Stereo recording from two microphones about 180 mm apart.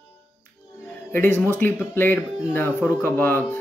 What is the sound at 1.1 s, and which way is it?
A man's voice, 15° left (ahead or behind).